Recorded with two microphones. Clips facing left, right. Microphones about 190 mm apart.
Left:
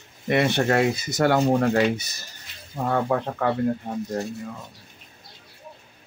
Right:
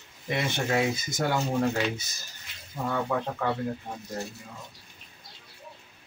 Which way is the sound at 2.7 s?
55° left (ahead or behind).